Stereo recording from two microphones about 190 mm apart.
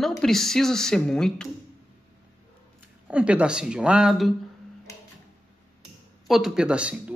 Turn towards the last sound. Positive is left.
turn(degrees=-5)  # may be behind; listen again after turning